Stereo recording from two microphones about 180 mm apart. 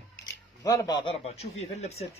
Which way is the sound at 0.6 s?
20° left (ahead or behind).